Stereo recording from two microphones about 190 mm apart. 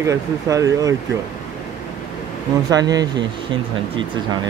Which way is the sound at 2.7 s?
20° right (ahead or behind).